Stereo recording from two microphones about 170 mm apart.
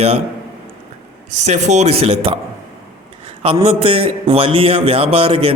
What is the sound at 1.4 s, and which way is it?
A man's voice, 45° right (ahead or behind).